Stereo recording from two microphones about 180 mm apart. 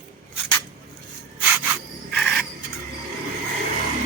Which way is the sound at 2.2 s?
Centre (ahead or behind).